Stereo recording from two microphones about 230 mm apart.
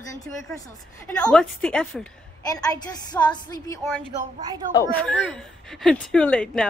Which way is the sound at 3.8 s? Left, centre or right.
Centre.